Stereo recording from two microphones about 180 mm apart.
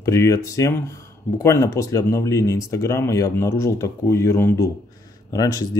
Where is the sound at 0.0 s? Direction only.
15° left (ahead or behind).